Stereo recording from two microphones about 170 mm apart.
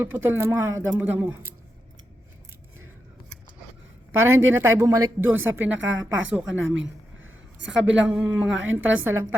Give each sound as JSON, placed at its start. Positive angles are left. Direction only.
{"t": 0.0, "sound": "a woman's voice", "side_deg": -15}
{"t": 4.2, "sound": "a woman's voice", "side_deg": -15}
{"t": 5.7, "sound": "a woman's voice", "side_deg": -90}
{"t": 7.7, "sound": "a woman's voice", "side_deg": -5}